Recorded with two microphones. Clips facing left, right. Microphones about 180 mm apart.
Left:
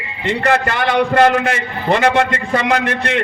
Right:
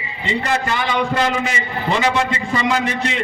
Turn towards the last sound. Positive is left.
turn(degrees=60)  # may be behind; listen again after turning